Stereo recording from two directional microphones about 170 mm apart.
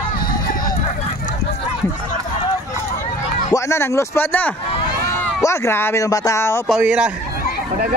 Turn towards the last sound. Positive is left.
turn(degrees=-5)  # may be behind; listen again after turning